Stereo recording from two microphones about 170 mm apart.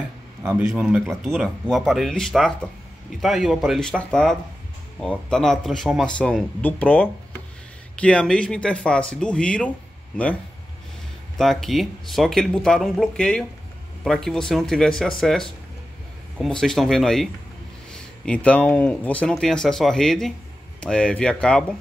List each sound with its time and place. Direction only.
0.4 s a man's voice: 15° right (ahead or behind)
0.7 s speech: centre (ahead or behind)
11.3 s speech: centre (ahead or behind)